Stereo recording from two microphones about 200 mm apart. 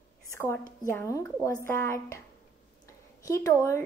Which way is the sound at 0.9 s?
15° left (ahead or behind).